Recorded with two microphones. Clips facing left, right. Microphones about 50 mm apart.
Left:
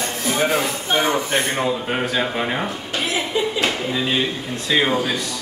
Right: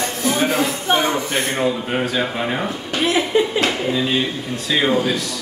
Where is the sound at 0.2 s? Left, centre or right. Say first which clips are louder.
Right 1 dB; centre.